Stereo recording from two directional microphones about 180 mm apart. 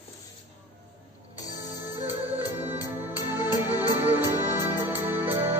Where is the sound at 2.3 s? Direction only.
10° right (ahead or behind).